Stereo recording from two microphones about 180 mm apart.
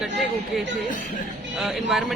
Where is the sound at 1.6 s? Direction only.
Centre (ahead or behind).